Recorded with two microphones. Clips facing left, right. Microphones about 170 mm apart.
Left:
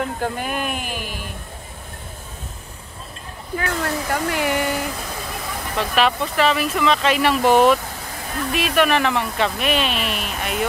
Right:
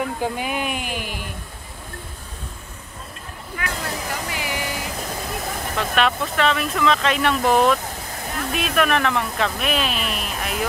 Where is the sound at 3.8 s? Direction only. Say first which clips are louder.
Left 6 dB; 55° left (ahead or behind).